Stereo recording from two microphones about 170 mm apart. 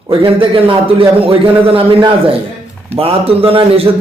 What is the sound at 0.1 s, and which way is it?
A man's voice, 30° right (ahead or behind).